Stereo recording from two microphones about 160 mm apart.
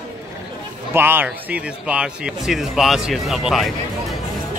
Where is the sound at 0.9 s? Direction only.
15° right (ahead or behind).